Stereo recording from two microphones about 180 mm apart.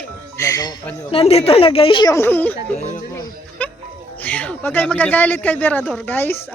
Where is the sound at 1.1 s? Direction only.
35° left (ahead or behind); by 2.6 s 10° left (ahead or behind).